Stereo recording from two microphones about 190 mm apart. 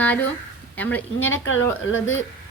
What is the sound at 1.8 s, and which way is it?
Speech, 80° left.